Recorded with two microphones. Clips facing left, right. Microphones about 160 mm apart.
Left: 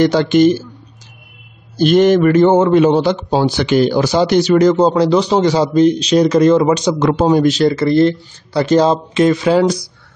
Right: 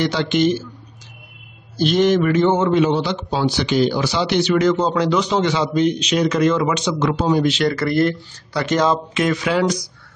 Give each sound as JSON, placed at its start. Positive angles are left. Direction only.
{"t": 0.0, "sound": "a man's voice", "side_deg": 45}
{"t": 1.8, "sound": "a man's voice", "side_deg": 50}
{"t": 7.6, "sound": "speech", "side_deg": 25}